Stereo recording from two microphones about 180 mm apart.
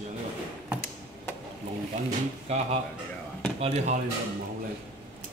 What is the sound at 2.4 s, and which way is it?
Speech, 35° right (ahead or behind).